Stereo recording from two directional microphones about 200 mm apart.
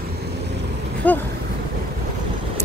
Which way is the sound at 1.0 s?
10° left (ahead or behind).